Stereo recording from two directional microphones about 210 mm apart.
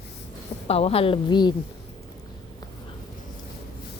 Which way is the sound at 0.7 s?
30° left (ahead or behind).